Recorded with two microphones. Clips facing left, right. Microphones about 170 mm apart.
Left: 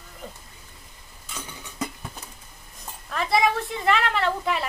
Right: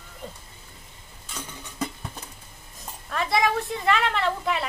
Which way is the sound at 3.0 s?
Centre (ahead or behind).